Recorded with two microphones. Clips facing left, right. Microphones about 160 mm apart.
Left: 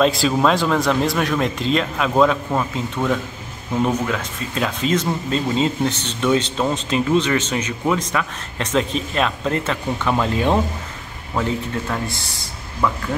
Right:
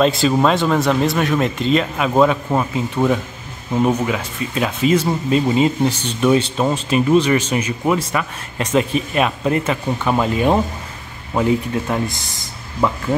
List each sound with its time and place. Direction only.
0.0 s a man's voice: centre (ahead or behind)
11.3 s speech: 20° right (ahead or behind)